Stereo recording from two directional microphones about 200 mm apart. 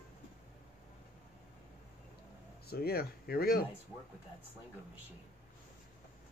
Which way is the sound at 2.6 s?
50° left (ahead or behind).